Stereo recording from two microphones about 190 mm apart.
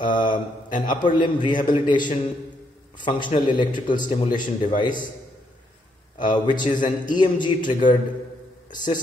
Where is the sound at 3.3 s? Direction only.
25° left (ahead or behind).